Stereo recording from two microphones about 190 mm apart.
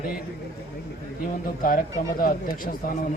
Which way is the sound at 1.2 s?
50° left (ahead or behind).